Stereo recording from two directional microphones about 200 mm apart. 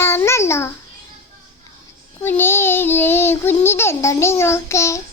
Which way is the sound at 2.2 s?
10° left (ahead or behind).